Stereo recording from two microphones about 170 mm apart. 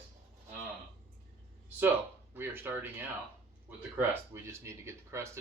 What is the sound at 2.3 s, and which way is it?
Speech, 10° right (ahead or behind).